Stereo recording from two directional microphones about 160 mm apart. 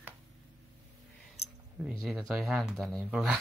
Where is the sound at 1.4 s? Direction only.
40° left (ahead or behind).